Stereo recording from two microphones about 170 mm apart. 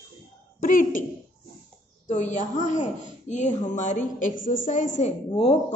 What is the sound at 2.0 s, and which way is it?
A woman's voice, 45° left (ahead or behind).